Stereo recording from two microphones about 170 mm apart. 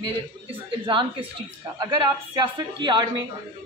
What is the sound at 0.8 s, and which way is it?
A man's voice, 30° right (ahead or behind).